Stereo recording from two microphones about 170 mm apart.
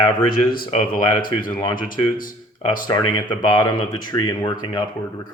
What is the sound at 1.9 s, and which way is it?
Speech, 55° left (ahead or behind).